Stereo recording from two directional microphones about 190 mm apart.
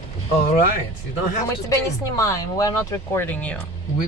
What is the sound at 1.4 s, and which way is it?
Speech, 15° left (ahead or behind).